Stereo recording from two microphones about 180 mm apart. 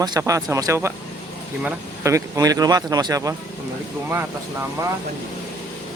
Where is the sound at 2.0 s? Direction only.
15° right (ahead or behind).